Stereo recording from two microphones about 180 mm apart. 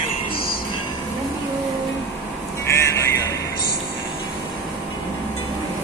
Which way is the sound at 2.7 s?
15° left (ahead or behind).